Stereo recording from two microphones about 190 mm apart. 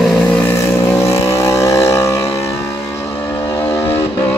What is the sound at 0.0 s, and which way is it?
Vehicle, 5° left (ahead or behind).